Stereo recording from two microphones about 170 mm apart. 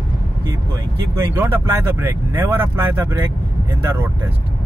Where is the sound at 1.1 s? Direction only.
15° right (ahead or behind).